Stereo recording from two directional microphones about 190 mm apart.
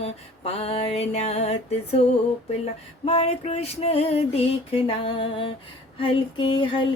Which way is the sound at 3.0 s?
30° left (ahead or behind).